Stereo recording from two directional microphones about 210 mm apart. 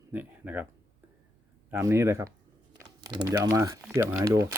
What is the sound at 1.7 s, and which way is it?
Speech, 15° right (ahead or behind).